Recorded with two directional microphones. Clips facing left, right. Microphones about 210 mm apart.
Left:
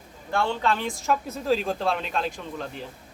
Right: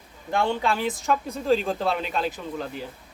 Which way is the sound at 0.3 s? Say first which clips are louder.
Right 1 dB; 15° right (ahead or behind).